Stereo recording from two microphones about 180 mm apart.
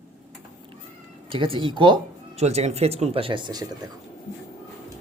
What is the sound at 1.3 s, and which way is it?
Speech, 30° right (ahead or behind).